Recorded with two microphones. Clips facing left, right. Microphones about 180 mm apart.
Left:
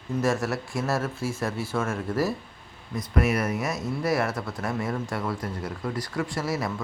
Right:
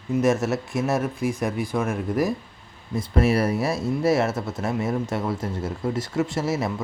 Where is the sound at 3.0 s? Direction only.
30° right (ahead or behind).